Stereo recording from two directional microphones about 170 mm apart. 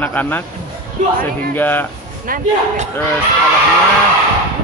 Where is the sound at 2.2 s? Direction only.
55° right (ahead or behind).